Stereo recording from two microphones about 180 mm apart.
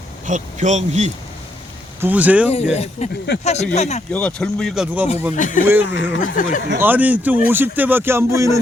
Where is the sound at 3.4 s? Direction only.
40° left (ahead or behind).